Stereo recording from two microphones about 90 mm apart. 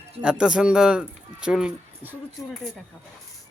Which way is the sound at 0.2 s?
10° right (ahead or behind).